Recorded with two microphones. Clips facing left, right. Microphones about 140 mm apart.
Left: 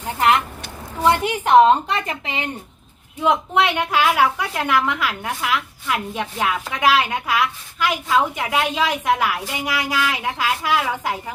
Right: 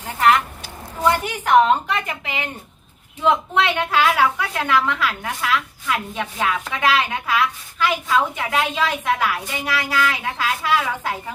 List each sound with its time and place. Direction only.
1.0 s a woman's voice: 25° left (ahead or behind)
3.2 s a woman's voice: 15° left (ahead or behind)